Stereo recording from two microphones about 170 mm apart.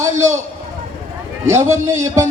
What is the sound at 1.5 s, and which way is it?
Speech, 15° right (ahead or behind).